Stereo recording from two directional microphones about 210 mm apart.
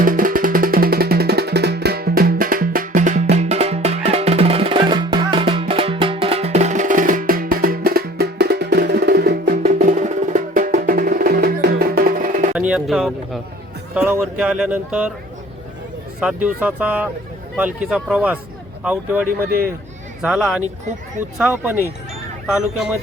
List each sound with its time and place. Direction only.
0.0 s music: 40° right (ahead or behind)
12.5 s a sound: 5° right (ahead or behind)
16.2 s speech: 5° right (ahead or behind)